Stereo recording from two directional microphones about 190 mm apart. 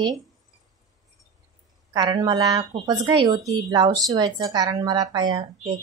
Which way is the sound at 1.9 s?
20° right (ahead or behind).